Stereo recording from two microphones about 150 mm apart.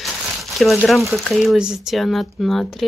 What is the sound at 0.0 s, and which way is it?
Crumpling, centre (ahead or behind).